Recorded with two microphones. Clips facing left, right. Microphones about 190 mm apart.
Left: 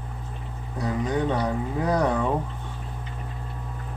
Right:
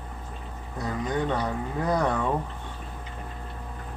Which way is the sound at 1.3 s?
10° left (ahead or behind).